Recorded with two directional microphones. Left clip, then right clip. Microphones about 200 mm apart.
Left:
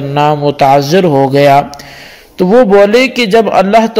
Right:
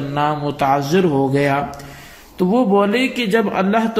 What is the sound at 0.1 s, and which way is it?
A man's voice, 40° left (ahead or behind).